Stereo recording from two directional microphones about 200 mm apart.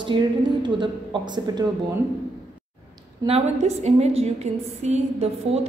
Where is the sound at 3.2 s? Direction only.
30° right (ahead or behind).